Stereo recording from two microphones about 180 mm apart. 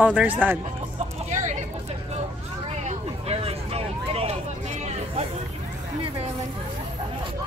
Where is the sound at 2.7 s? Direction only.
35° right (ahead or behind).